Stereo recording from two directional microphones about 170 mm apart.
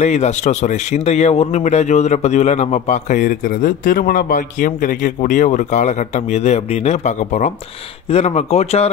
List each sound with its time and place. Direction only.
0.0 s a man's voice: 40° left (ahead or behind)